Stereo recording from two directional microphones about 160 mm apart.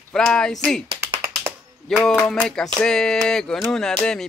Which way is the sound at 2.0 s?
5° left (ahead or behind).